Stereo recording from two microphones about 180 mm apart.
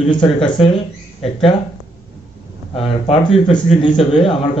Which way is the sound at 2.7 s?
30° left (ahead or behind).